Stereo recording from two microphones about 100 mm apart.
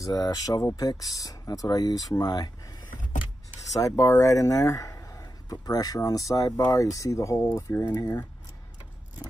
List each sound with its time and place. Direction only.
0.0 s speech: 40° left (ahead or behind)
3.8 s speech: 30° left (ahead or behind)